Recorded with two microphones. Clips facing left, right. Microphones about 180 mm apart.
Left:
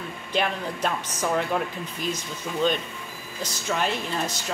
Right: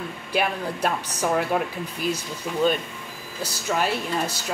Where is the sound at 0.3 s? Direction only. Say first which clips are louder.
Right 1 dB; 10° right (ahead or behind).